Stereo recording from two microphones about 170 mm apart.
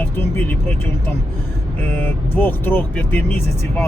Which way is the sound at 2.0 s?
10° left (ahead or behind).